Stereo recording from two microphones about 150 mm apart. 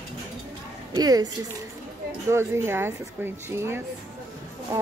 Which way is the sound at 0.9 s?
25° right (ahead or behind).